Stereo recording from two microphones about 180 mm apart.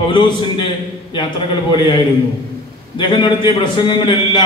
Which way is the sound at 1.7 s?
25° left (ahead or behind).